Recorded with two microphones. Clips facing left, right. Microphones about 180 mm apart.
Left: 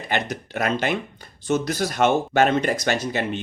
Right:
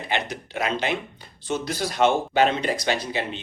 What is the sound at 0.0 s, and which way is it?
Speech, 45° left (ahead or behind).